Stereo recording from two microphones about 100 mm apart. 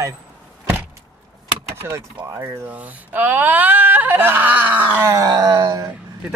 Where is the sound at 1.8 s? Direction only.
30° right (ahead or behind).